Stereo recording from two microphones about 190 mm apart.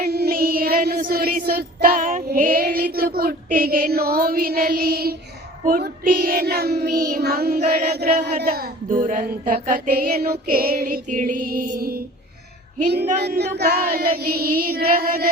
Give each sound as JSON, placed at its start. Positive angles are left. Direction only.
{"t": 0.0, "sound": "child singing", "side_deg": -55}
{"t": 7.7, "sound": "music", "side_deg": -55}
{"t": 13.2, "sound": "music", "side_deg": -60}